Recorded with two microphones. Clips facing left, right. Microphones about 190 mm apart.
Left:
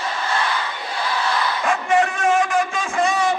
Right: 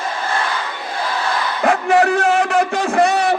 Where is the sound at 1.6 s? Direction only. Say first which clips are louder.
Right 6 dB; 70° right (ahead or behind).